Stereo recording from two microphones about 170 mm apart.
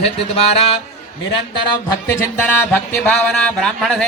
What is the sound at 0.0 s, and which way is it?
Music, 35° left (ahead or behind).